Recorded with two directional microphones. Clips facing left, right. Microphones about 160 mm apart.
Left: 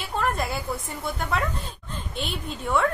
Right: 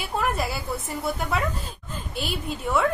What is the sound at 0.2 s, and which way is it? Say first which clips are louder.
A woman's voice: left 2 dB; centre (ahead or behind).